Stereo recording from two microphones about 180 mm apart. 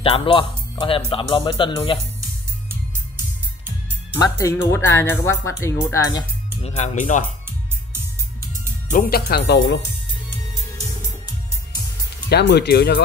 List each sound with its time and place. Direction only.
0.0 s speech: 30° left (ahead or behind)
4.4 s speech: 15° left (ahead or behind)
6.6 s speech: 40° left (ahead or behind)
8.8 s speech: 50° left (ahead or behind); by 9.8 s 70° left (ahead or behind)
12.3 s speech: 70° left (ahead or behind)